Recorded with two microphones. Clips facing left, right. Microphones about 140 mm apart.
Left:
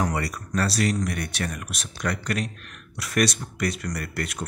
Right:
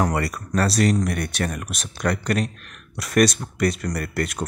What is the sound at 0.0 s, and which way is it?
Speech, 55° right (ahead or behind).